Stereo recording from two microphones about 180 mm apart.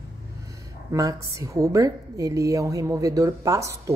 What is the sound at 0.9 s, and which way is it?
A woman's voice, 20° right (ahead or behind).